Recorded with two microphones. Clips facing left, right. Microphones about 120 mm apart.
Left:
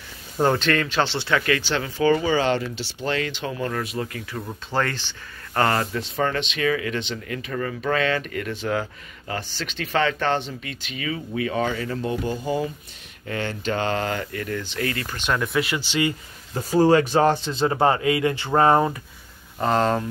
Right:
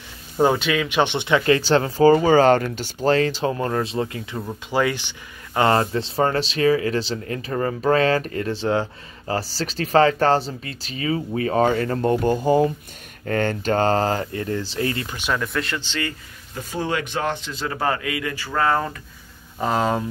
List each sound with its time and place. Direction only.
0.4 s speech: 10° right (ahead or behind)
1.6 s speech: 40° right (ahead or behind); by 4.4 s 25° right (ahead or behind)
4.4 s speech: 10° right (ahead or behind)
5.7 s speech: 30° right (ahead or behind)
15.1 s speech: 5° right (ahead or behind); by 16.2 s 15° left (ahead or behind)
16.7 s a man's voice: 35° left (ahead or behind)
19.6 s speech: 5° right (ahead or behind)